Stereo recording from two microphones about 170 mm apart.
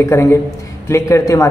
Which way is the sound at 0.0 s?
15° left (ahead or behind).